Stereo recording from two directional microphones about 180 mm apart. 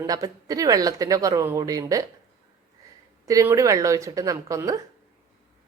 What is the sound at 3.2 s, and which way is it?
A woman's voice, 15° right (ahead or behind).